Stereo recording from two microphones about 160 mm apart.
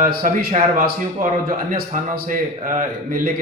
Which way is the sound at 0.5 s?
50° right (ahead or behind).